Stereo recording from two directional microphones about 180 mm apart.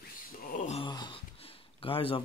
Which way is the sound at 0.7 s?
25° left (ahead or behind).